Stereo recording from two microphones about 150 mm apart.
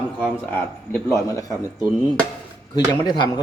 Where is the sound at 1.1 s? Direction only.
20° left (ahead or behind).